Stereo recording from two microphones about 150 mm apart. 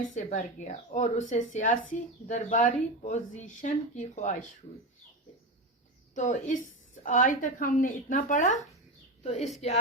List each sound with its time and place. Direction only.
0.0 s speech: 55° left (ahead or behind)
6.1 s speech: 55° left (ahead or behind)
9.2 s a woman's voice: 45° left (ahead or behind)